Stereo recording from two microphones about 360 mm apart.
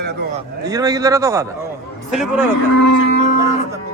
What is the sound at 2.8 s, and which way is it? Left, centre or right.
Speech, left.